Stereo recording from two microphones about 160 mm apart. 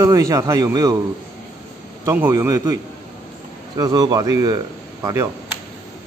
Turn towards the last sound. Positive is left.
turn(degrees=-20)  # may be behind; listen again after turning